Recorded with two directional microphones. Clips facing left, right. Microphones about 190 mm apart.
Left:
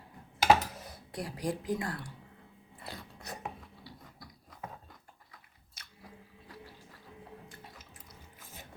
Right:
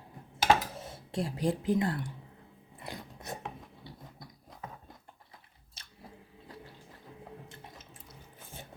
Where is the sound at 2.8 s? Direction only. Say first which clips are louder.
Right 3 dB; 20° right (ahead or behind).